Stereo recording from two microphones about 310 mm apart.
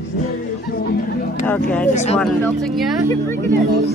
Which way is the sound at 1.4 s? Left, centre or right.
Centre.